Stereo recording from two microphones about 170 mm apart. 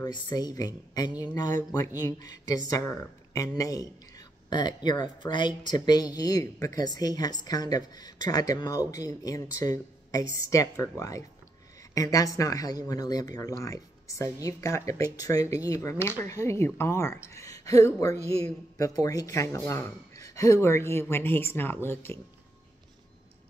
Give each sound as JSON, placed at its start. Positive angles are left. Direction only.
{"t": 0.0, "sound": "speech", "side_deg": 25}